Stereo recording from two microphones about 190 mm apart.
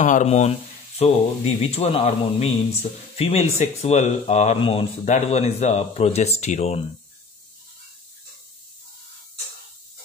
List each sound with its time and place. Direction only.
0.0 s speech: 40° left (ahead or behind)